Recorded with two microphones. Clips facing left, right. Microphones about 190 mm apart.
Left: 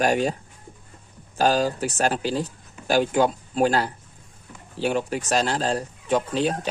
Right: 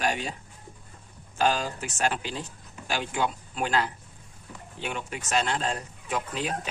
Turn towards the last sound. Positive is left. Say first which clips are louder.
# left 8 dB
turn(degrees=30)  # may be behind; listen again after turning